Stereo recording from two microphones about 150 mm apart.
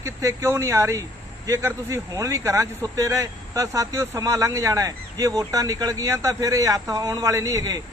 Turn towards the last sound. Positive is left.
turn(degrees=-25)  # may be behind; listen again after turning